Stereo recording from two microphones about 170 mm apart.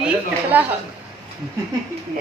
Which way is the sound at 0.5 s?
10° right (ahead or behind).